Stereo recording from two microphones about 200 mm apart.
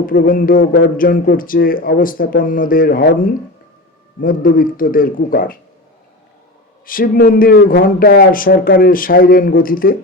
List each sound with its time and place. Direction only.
0.0 s speech: 45° left (ahead or behind)
4.2 s speech: 45° left (ahead or behind)
6.8 s speech: 45° left (ahead or behind)